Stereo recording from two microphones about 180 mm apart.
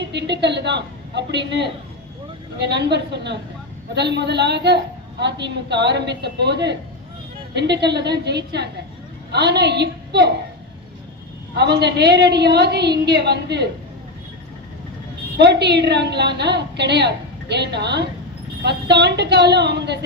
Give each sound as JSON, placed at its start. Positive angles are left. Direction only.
{"t": 0.1, "sound": "a woman's voice", "side_deg": -70}
{"t": 11.5, "sound": "a woman's voice", "side_deg": -70}
{"t": 15.4, "sound": "a woman's voice", "side_deg": -70}